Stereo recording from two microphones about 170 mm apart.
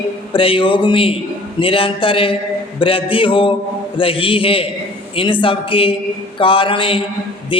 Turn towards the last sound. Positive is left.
turn(degrees=30)  # may be behind; listen again after turning